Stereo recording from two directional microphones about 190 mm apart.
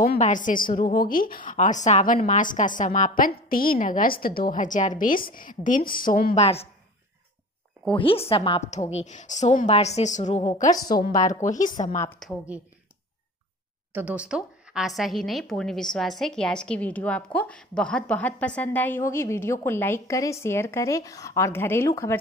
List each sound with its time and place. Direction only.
0.0 s a woman's voice: 45° left (ahead or behind)
6.4 s a woman's voice: 30° left (ahead or behind)
7.9 s a woman's voice: 30° left (ahead or behind)
10.7 s a woman's voice: 20° left (ahead or behind)
11.4 s a woman's voice: 40° left (ahead or behind)
12.2 s speech: centre (ahead or behind)
13.9 s a woman's voice: 5° right (ahead or behind); by 22.2 s 15° left (ahead or behind)